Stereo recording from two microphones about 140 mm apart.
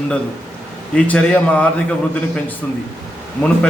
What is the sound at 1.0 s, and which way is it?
Speech, 10° left (ahead or behind).